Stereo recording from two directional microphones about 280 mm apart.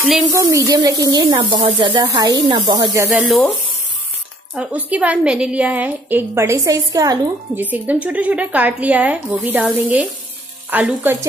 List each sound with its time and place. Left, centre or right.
0.1 s speech: centre
3.2 s a woman's voice: centre
4.6 s a woman's voice: centre